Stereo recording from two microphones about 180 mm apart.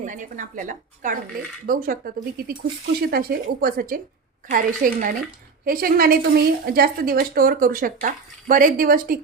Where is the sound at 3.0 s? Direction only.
55° right (ahead or behind).